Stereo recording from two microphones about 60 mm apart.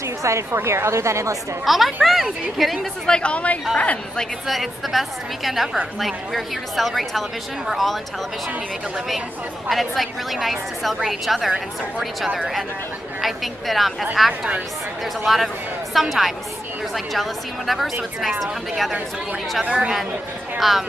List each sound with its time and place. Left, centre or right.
0.2 s a woman's voice: right
0.6 s a woman's voice: right
1.7 s a woman's voice: centre
3.1 s a woman's voice: centre
4.5 s a woman's voice: centre
9.7 s a woman's voice: centre
13.2 s a woman's voice: centre
19.6 s a woman's voice: right
20.5 s speech: centre